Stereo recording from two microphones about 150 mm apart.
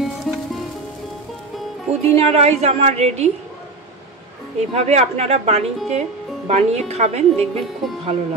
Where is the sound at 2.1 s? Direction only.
45° right (ahead or behind).